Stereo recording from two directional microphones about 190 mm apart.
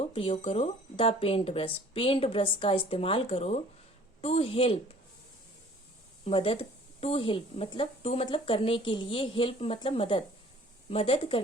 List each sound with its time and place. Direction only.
0.0 s a woman's voice: 30° left (ahead or behind)
6.2 s speech: 30° left (ahead or behind)